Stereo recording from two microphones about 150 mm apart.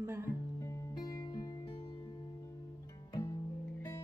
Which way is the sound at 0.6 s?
30° left (ahead or behind).